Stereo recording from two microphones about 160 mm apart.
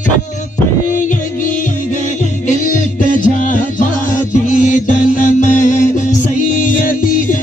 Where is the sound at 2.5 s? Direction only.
50° left (ahead or behind).